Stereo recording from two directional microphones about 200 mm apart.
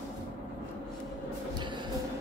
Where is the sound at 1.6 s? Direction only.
20° right (ahead or behind).